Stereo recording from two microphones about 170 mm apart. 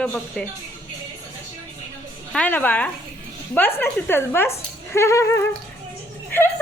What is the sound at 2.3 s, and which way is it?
A woman's voice, 10° left (ahead or behind).